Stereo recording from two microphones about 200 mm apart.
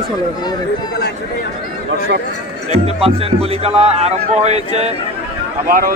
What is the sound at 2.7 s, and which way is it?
Speech, 30° right (ahead or behind).